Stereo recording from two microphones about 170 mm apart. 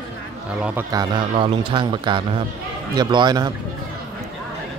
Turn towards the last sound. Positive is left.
turn(degrees=-25)  # may be behind; listen again after turning